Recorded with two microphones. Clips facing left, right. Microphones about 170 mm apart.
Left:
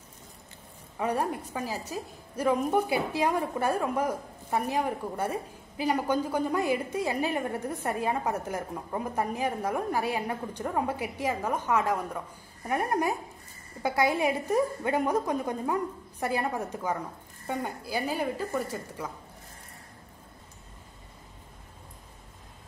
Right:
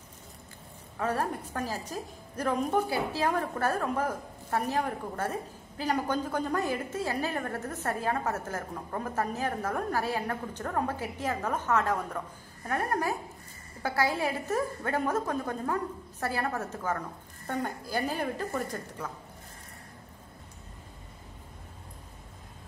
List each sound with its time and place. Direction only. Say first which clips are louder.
0.9 s a woman's voice: left 2 dB; 15° left (ahead or behind)